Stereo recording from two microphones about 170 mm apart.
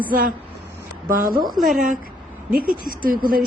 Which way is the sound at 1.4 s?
Centre (ahead or behind).